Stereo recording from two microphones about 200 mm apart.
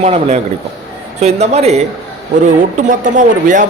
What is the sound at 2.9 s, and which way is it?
Speech, 40° right (ahead or behind).